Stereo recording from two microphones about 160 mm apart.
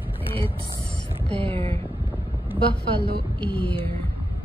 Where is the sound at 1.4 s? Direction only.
35° right (ahead or behind).